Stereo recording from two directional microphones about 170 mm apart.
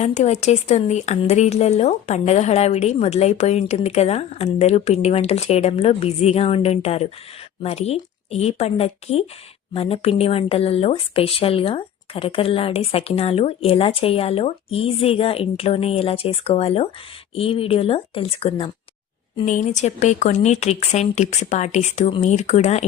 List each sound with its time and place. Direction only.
0.0 s speech: 40° left (ahead or behind)
19.5 s speech: 45° left (ahead or behind)